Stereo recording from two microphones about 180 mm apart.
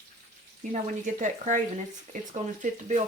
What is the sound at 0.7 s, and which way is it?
Speech, 45° right (ahead or behind).